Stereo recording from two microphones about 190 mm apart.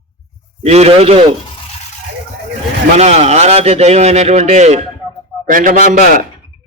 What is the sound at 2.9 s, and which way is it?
A man's voice, 35° right (ahead or behind).